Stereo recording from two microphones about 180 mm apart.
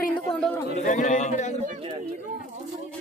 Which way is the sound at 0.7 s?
45° left (ahead or behind).